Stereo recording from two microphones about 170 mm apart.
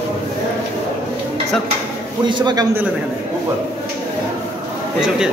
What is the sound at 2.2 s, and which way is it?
Speech, 25° right (ahead or behind).